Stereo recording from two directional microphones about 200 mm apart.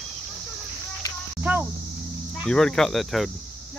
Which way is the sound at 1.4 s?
10° right (ahead or behind).